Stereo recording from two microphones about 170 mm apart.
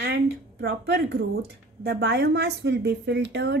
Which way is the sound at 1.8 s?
75° right (ahead or behind).